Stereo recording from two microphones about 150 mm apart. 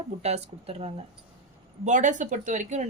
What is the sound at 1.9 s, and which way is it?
Speech, 55° right (ahead or behind).